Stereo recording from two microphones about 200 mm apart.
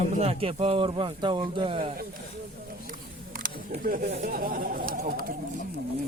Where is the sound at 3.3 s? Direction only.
45° right (ahead or behind).